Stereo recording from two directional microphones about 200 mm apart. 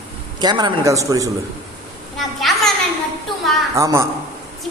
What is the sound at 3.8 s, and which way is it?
Speech, 15° right (ahead or behind).